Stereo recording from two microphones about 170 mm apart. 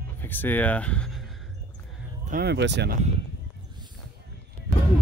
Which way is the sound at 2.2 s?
60° right (ahead or behind).